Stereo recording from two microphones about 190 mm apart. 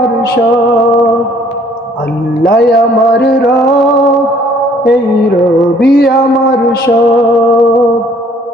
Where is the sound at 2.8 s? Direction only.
Centre (ahead or behind).